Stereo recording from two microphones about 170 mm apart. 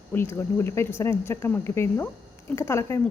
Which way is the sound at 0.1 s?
15° left (ahead or behind).